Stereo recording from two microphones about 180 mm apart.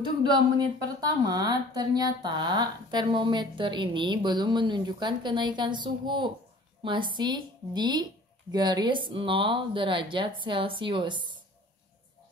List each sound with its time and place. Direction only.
0.2 s a woman's voice: 25° right (ahead or behind)